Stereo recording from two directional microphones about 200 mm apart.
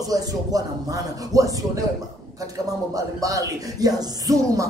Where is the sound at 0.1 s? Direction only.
20° right (ahead or behind).